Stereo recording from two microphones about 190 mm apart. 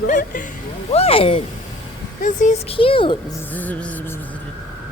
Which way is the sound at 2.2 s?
40° left (ahead or behind).